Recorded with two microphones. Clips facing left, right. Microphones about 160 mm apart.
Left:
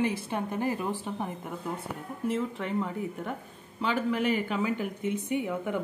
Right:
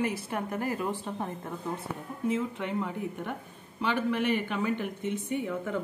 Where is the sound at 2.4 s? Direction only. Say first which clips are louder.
Left 1 dB; centre (ahead or behind); by 5.8 s 15° left (ahead or behind).